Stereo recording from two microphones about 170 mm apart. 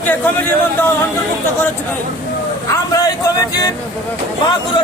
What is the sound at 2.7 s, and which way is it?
A man's voice, 20° left (ahead or behind).